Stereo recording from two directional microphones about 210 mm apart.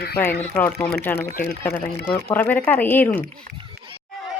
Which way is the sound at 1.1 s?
45° left (ahead or behind).